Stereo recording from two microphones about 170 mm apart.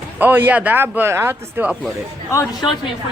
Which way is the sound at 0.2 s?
10° right (ahead or behind).